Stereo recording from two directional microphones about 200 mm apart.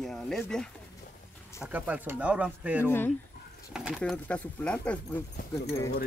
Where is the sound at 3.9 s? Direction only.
10° left (ahead or behind).